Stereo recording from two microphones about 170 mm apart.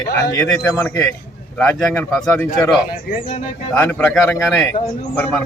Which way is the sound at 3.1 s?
60° left (ahead or behind).